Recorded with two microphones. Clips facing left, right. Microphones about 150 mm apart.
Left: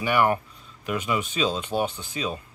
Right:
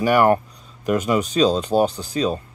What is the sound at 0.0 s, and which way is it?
Speech, 45° right (ahead or behind).